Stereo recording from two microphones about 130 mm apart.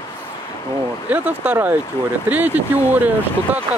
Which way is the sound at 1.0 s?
10° right (ahead or behind).